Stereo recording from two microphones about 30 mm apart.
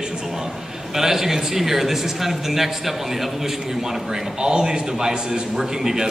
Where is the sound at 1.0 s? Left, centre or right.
Centre.